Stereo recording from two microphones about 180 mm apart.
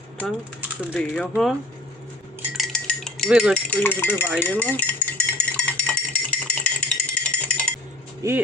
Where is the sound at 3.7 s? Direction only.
10° left (ahead or behind).